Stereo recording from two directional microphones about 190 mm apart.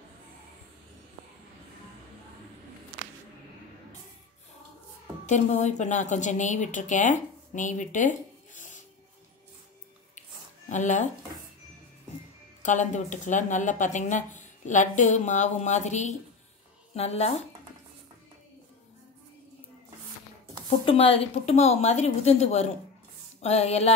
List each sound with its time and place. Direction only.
5.2 s speech: 40° left (ahead or behind)
8.5 s music: 40° left (ahead or behind)
10.7 s speech: 40° left (ahead or behind)
12.6 s speech: 40° left (ahead or behind)
20.8 s speech: 30° left (ahead or behind)